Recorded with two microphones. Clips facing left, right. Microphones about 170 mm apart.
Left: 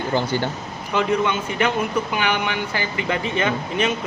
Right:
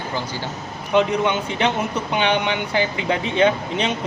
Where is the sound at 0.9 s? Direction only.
20° right (ahead or behind).